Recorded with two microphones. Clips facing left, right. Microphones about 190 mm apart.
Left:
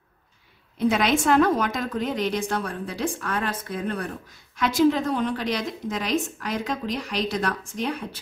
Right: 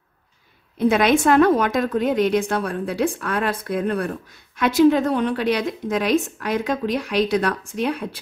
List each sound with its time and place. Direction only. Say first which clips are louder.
0.7 s a woman's voice: right 5 dB; 55° right (ahead or behind)